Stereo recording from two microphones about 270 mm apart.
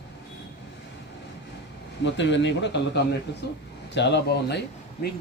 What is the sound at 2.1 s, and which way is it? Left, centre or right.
A man's voice, left.